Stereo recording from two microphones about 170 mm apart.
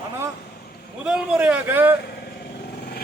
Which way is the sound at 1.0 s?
5° right (ahead or behind).